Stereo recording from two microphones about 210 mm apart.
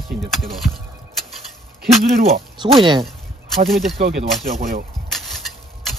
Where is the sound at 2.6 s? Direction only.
25° right (ahead or behind).